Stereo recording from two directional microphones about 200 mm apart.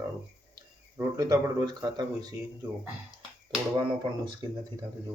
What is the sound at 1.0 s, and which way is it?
Speech, 20° right (ahead or behind).